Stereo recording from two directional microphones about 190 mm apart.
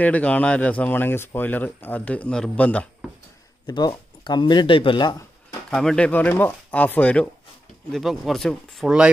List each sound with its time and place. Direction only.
0.0 s speech: 5° left (ahead or behind)
3.6 s speech: 20° left (ahead or behind)
5.7 s speech: 5° left (ahead or behind)